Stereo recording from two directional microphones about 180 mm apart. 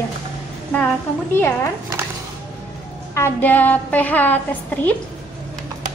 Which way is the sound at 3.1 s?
10° left (ahead or behind).